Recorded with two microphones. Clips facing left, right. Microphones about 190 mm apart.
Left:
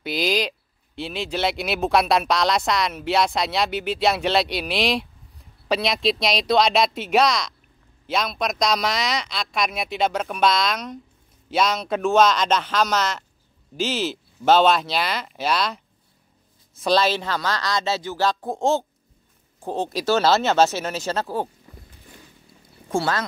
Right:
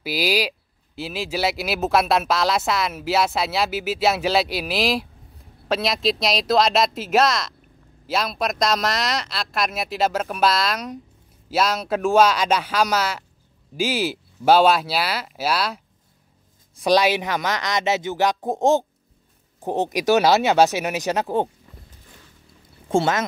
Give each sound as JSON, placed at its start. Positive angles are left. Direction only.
{"t": 0.0, "sound": "speech", "side_deg": -5}
{"t": 16.8, "sound": "speech", "side_deg": -15}
{"t": 22.8, "sound": "speech", "side_deg": -20}